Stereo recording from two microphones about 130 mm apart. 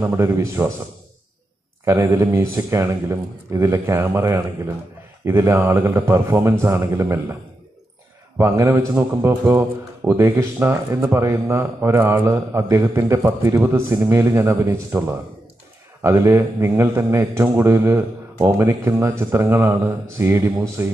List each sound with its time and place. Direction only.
0.0 s a man's voice: 20° right (ahead or behind)
1.9 s a man's voice: 20° right (ahead or behind)
8.4 s a man's voice: 20° right (ahead or behind)